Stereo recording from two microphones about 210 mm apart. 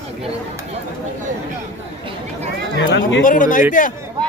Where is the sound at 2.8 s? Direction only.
60° left (ahead or behind).